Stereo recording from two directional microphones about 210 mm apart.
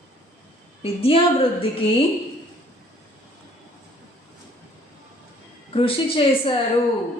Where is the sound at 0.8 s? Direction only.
25° left (ahead or behind).